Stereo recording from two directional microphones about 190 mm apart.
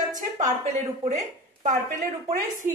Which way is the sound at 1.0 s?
35° right (ahead or behind).